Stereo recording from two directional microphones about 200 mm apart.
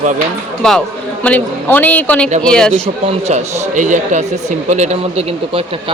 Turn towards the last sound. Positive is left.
turn(degrees=-30)  # may be behind; listen again after turning